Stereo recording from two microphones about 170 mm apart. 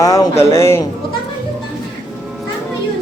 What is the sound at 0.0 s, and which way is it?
Speech, 20° left (ahead or behind).